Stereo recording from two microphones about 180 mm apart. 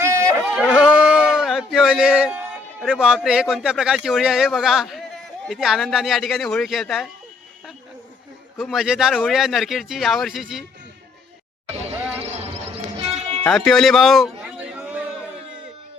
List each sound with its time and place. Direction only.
0.0 s a sound: 15° right (ahead or behind)
3.0 s speech: 5° right (ahead or behind)
8.5 s speech: centre (ahead or behind)
12.2 s clip-clop: 35° right (ahead or behind)
13.4 s speech: 5° left (ahead or behind)
14.6 s a sound: 10° right (ahead or behind)